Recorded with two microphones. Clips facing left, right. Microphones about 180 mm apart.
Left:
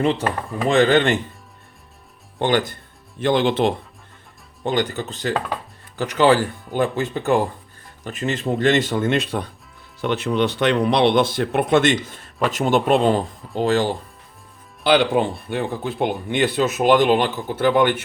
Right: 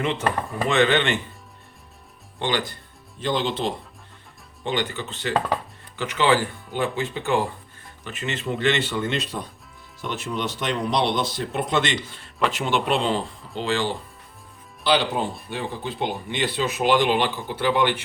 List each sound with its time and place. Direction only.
0.0 s speech: 35° left (ahead or behind)
2.4 s speech: 50° left (ahead or behind)
4.6 s speech: 40° left (ahead or behind)
15.1 s speech: 60° left (ahead or behind)